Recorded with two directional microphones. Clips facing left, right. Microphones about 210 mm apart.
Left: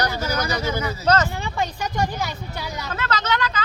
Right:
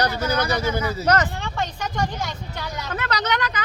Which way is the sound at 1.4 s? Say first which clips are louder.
Left 2 dB; 10° left (ahead or behind).